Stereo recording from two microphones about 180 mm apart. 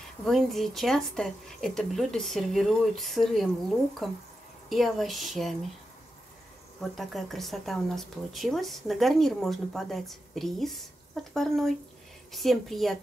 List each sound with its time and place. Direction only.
0.2 s speech: centre (ahead or behind)
6.8 s speech: centre (ahead or behind)